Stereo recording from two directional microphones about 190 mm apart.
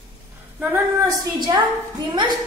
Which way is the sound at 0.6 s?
10° right (ahead or behind).